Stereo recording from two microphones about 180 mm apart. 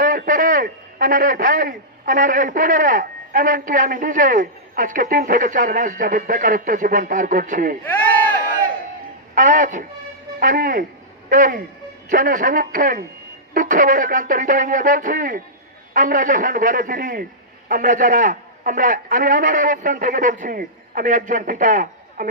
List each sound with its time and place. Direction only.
0.0 s a man's voice: 50° right (ahead or behind)
7.9 s crowd: 10° left (ahead or behind)
9.3 s a man's voice: 45° right (ahead or behind)